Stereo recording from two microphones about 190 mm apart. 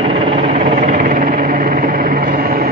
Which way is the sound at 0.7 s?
45° right (ahead or behind).